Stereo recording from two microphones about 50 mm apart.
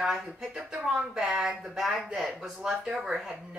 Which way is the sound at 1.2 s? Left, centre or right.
Centre.